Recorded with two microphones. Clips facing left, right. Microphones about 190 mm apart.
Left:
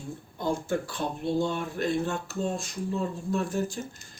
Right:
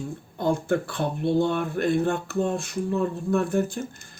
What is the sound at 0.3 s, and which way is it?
Speech, 60° right (ahead or behind).